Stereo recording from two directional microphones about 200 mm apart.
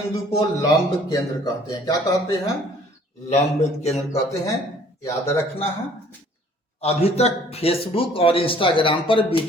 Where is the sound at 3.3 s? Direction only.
35° left (ahead or behind).